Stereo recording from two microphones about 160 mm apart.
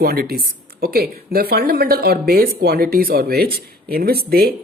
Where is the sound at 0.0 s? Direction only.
70° right (ahead or behind).